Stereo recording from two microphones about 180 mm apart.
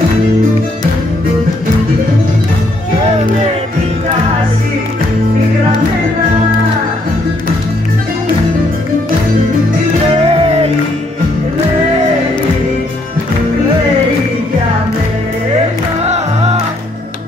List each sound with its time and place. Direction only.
10.1 s music: 35° right (ahead or behind)
16.0 s music: 35° right (ahead or behind)